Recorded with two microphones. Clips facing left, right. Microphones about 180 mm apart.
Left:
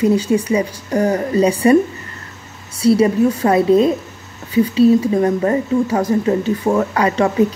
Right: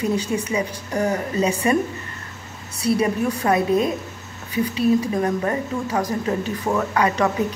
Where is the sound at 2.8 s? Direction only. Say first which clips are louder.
Left 7 dB; 30° left (ahead or behind).